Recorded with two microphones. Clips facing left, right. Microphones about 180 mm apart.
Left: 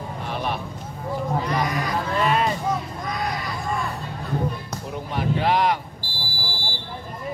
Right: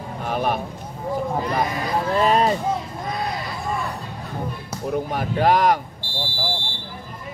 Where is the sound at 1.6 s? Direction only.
30° right (ahead or behind).